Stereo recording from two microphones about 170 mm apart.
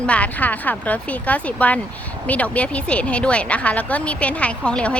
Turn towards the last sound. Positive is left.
turn(degrees=5)  # may be behind; listen again after turning